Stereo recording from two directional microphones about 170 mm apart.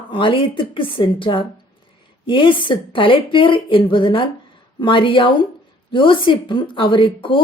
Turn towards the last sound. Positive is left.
turn(degrees=30)  # may be behind; listen again after turning